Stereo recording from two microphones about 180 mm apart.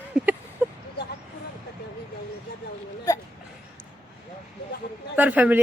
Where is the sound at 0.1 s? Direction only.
5° right (ahead or behind).